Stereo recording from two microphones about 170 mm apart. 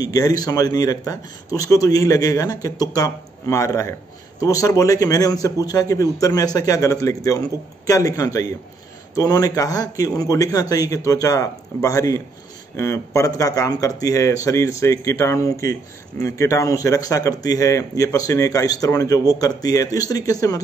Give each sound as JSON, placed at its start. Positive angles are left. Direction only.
{"t": 0.0, "sound": "speech", "side_deg": 20}